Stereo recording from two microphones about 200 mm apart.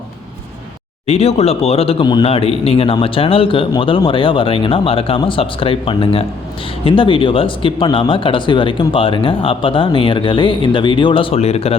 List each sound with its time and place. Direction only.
1.0 s speech: 30° left (ahead or behind)